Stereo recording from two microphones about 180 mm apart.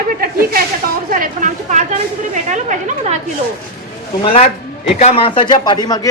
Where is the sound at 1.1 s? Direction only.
50° right (ahead or behind).